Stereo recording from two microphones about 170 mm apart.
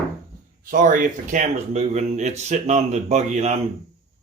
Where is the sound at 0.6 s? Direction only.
50° right (ahead or behind).